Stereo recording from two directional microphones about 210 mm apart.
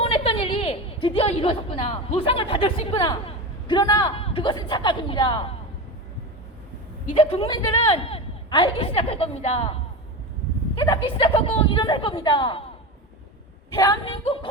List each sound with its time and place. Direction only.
0.0 s a woman's voice: 25° left (ahead or behind)
7.1 s a man's voice: 25° left (ahead or behind)
10.8 s a man's voice: 20° left (ahead or behind)
14.0 s a man's voice: 25° left (ahead or behind)